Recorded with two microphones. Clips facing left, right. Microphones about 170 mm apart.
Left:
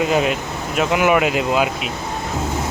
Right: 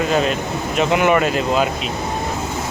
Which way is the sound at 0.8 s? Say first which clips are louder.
Even; 5° left (ahead or behind).